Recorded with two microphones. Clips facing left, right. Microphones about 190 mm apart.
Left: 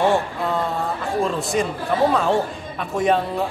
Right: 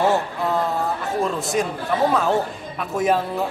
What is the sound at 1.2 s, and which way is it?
Speech, centre (ahead or behind).